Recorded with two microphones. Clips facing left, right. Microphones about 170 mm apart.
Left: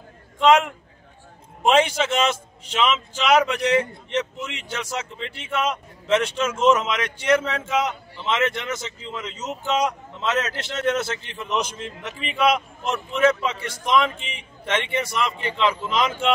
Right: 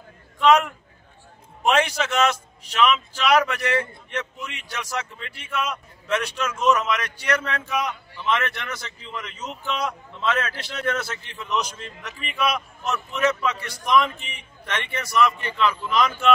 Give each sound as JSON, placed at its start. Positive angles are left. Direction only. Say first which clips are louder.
{"t": 0.4, "sound": "a man's voice", "louder": "left 1 dB", "side_deg": 25}